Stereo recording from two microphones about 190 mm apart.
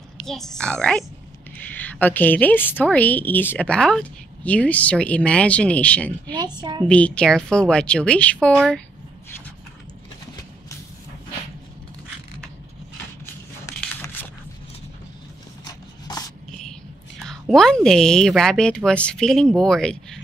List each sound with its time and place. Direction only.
0.3 s a woman's voice: centre (ahead or behind)
6.3 s a woman's voice: 25° right (ahead or behind)
6.9 s speech: 5° left (ahead or behind)
13.7 s a sound: 15° left (ahead or behind)
17.3 s speech: centre (ahead or behind)